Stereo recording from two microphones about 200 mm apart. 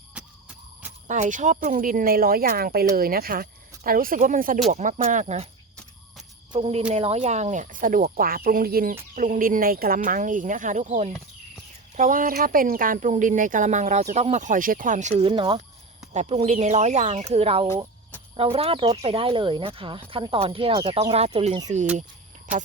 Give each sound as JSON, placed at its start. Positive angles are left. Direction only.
{"t": 1.0, "sound": "speech", "side_deg": -35}
{"t": 6.5, "sound": "speech", "side_deg": -30}
{"t": 15.2, "sound": "speech", "side_deg": -20}
{"t": 16.1, "sound": "speech", "side_deg": -35}